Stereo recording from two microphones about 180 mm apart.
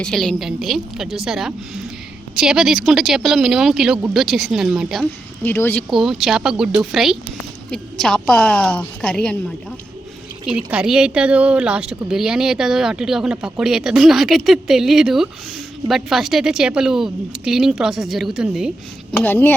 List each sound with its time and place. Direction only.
0.0 s a woman's voice: 5° left (ahead or behind)
5.5 s speech: 10° left (ahead or behind)
5.9 s a woman's voice: centre (ahead or behind)
10.4 s a woman's voice: 5° right (ahead or behind)
19.1 s speech: 10° left (ahead or behind)